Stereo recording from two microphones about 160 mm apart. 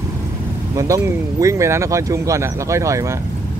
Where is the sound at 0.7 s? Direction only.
20° right (ahead or behind).